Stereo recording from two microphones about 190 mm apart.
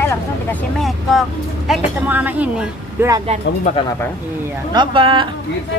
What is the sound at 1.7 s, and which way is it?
A woman's voice, 10° right (ahead or behind).